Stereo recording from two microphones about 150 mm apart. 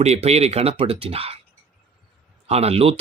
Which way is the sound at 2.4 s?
45° right (ahead or behind).